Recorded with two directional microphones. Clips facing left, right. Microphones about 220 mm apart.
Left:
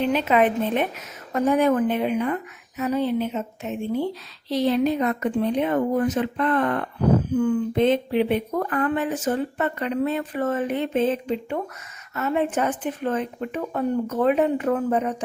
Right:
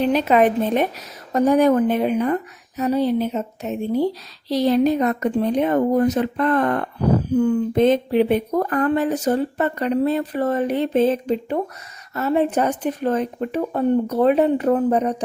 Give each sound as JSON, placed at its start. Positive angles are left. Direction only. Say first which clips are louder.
{"t": 0.0, "sound": "a woman's voice", "louder": "right 3 dB", "side_deg": -40}